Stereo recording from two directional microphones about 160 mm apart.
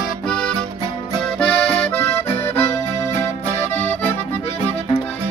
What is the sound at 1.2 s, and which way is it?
Accordion, 5° left (ahead or behind).